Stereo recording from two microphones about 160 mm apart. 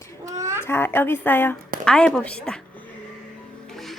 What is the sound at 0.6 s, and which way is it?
A woman's voice, 15° left (ahead or behind).